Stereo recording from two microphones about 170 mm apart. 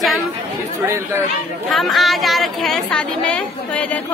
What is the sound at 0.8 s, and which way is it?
Speech, 15° right (ahead or behind).